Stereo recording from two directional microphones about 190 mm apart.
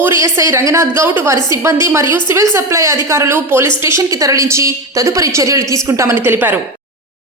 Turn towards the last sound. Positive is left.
turn(degrees=-10)  # may be behind; listen again after turning